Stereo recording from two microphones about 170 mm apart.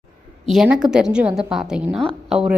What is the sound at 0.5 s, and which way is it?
Speech, 5° right (ahead or behind).